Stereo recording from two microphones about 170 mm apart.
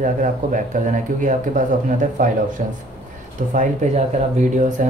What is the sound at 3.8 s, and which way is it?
Speech, 45° right (ahead or behind).